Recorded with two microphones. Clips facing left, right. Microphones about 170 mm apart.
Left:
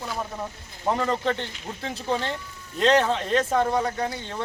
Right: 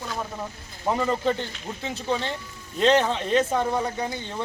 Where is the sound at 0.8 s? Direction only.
5° right (ahead or behind).